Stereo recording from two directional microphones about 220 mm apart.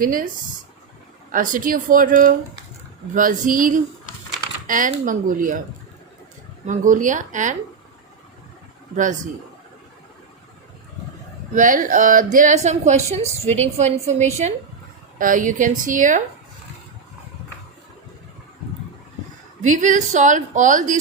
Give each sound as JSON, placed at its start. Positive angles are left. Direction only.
{"t": 0.0, "sound": "speech", "side_deg": -40}
{"t": 1.3, "sound": "speech", "side_deg": -35}
{"t": 6.7, "sound": "speech", "side_deg": -35}
{"t": 9.0, "sound": "speech", "side_deg": -35}
{"t": 11.5, "sound": "speech", "side_deg": -35}
{"t": 19.6, "sound": "speech", "side_deg": -35}